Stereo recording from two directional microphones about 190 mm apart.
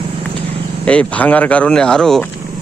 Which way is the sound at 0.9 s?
5° left (ahead or behind).